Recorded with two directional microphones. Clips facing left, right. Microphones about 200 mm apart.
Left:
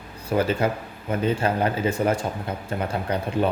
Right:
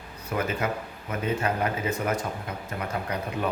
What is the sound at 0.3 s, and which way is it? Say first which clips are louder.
Speech: left 6 dB; 30° left (ahead or behind).